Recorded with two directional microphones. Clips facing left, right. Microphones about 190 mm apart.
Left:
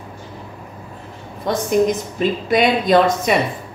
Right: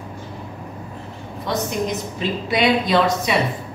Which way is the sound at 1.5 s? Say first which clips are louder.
Left 6 dB; 50° left (ahead or behind).